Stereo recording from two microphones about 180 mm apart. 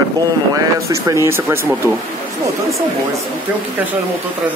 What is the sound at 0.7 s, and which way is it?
Speech, 15° right (ahead or behind).